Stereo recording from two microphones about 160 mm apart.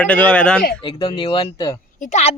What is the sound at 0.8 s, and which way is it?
Speech, 30° left (ahead or behind).